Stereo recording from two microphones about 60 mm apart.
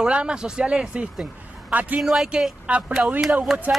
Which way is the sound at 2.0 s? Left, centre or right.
Centre.